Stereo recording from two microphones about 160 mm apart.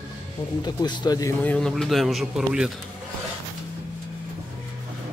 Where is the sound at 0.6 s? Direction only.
25° left (ahead or behind).